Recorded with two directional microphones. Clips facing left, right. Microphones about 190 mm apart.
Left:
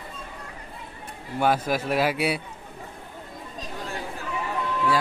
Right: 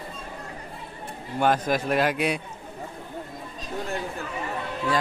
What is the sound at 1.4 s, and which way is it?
A man's voice, 10° left (ahead or behind).